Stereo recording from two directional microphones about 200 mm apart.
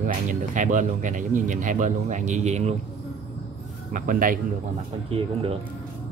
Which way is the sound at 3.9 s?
45° right (ahead or behind).